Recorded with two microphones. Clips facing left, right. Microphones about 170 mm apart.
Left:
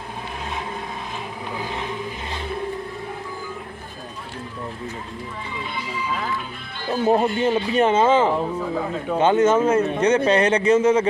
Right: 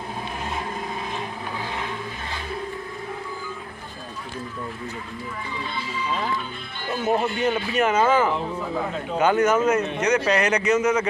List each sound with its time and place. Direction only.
6.9 s a man's voice: 35° left (ahead or behind)